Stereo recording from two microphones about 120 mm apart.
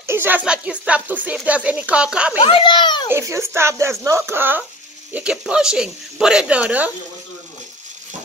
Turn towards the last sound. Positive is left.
turn(degrees=-10)  # may be behind; listen again after turning